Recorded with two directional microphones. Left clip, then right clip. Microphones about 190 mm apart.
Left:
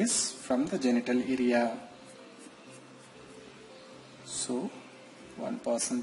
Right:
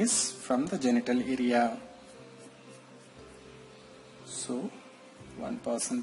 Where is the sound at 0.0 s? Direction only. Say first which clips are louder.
Right 1 dB; 30° right (ahead or behind).